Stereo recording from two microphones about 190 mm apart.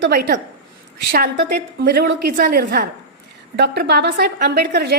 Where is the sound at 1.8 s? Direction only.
50° right (ahead or behind).